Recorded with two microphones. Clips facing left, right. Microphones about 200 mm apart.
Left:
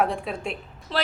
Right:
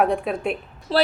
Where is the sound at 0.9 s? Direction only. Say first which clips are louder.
Right 8 dB; 35° right (ahead or behind).